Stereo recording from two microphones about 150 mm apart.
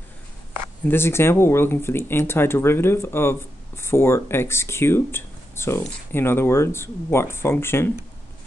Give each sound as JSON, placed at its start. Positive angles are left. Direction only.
{"t": 0.8, "sound": "speech", "side_deg": 15}